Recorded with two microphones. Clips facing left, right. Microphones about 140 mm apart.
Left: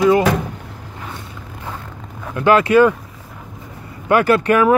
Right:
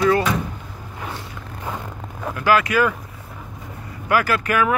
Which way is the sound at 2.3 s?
25° left (ahead or behind).